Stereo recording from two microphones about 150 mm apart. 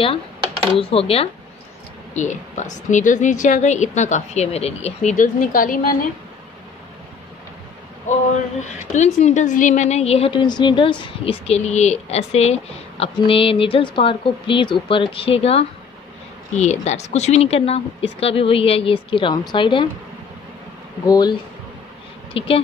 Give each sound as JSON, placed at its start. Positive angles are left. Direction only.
{"t": 0.7, "sound": "a woman's voice", "side_deg": 40}
{"t": 2.1, "sound": "a woman's voice", "side_deg": 55}
{"t": 5.1, "sound": "a woman's voice", "side_deg": 65}
{"t": 8.1, "sound": "a woman's voice", "side_deg": 55}
{"t": 21.0, "sound": "speech", "side_deg": 25}
{"t": 22.3, "sound": "a woman's voice", "side_deg": 35}